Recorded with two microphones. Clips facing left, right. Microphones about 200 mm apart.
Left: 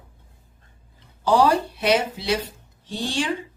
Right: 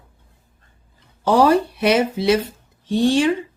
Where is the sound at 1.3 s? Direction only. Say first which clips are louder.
Right 4 dB; 60° right (ahead or behind).